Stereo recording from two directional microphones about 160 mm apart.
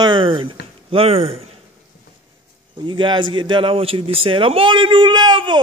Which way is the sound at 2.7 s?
30° right (ahead or behind).